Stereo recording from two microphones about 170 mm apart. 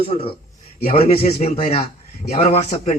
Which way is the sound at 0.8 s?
60° left (ahead or behind).